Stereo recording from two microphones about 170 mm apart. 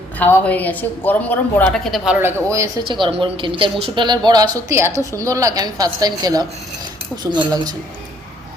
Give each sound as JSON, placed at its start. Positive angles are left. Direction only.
{"t": 0.2, "sound": "a woman's voice", "side_deg": 10}
{"t": 2.2, "sound": "speech", "side_deg": -15}
{"t": 2.8, "sound": "a woman's voice", "side_deg": -30}